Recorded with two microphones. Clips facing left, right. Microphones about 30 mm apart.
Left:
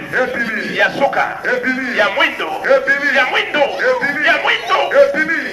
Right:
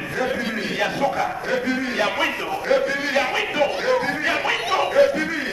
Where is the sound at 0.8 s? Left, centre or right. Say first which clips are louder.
Left 8 dB; left.